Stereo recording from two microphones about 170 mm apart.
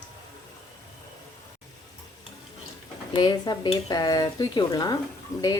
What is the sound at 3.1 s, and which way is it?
Speech, 25° left (ahead or behind).